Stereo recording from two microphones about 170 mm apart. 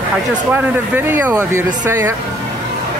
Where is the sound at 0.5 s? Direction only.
10° right (ahead or behind).